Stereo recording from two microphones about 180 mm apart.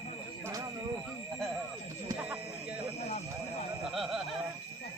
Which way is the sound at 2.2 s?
10° right (ahead or behind).